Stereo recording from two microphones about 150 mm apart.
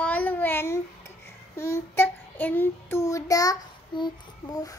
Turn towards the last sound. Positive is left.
turn(degrees=25)  # may be behind; listen again after turning